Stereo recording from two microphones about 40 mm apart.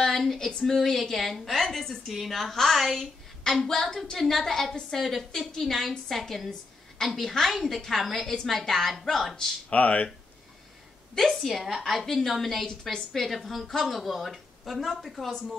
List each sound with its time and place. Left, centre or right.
0.2 s a woman's voice: centre
3.4 s a woman's voice: centre
9.7 s speech: left
11.1 s a woman's voice: centre